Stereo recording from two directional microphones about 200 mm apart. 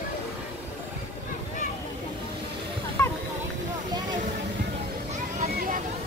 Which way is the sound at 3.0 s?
15° left (ahead or behind).